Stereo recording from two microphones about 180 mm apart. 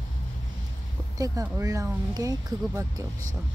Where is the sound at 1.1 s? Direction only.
20° right (ahead or behind).